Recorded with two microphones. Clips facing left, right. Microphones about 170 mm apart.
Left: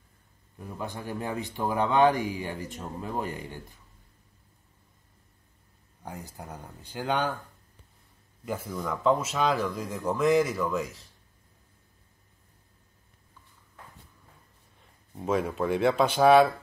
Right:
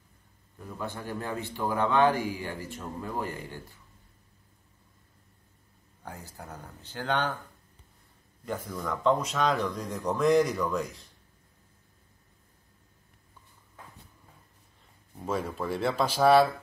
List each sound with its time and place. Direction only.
0.7 s speech: 15° left (ahead or behind)
6.0 s speech: 15° left (ahead or behind)
8.5 s speech: 10° left (ahead or behind)
15.1 s speech: 10° left (ahead or behind)